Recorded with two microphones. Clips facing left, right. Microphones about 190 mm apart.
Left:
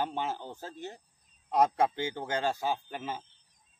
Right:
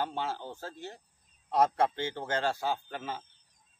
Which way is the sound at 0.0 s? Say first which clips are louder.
Left 1 dB; 15° left (ahead or behind).